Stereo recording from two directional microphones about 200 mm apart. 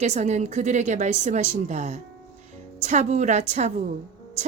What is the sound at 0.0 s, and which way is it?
A woman's voice, 35° right (ahead or behind).